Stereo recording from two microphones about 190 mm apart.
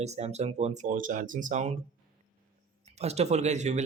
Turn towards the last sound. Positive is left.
turn(degrees=-35)  # may be behind; listen again after turning